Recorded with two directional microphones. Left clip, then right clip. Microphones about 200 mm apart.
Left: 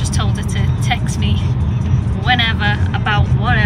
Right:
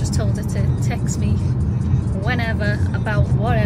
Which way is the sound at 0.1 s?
10° right (ahead or behind).